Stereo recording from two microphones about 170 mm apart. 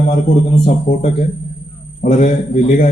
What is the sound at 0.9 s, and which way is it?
Speech, 55° left (ahead or behind).